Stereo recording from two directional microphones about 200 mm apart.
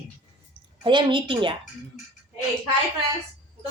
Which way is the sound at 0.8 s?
25° right (ahead or behind).